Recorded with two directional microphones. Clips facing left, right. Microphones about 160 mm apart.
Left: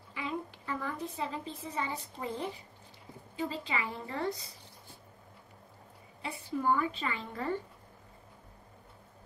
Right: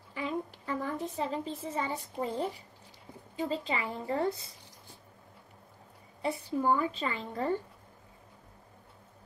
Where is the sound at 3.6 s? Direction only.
40° right (ahead or behind).